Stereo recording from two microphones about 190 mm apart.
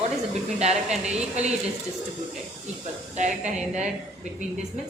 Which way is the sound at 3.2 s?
40° right (ahead or behind).